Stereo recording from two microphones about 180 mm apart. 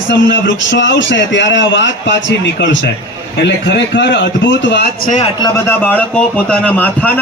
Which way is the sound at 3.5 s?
75° left (ahead or behind).